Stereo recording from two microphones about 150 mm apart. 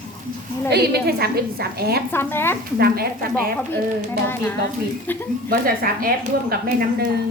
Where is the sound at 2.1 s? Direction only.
15° left (ahead or behind).